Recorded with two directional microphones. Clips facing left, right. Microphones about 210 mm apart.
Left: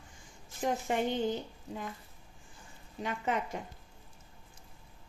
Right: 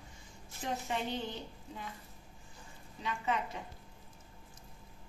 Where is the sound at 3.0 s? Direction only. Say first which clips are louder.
Left 2 dB; 50° left (ahead or behind).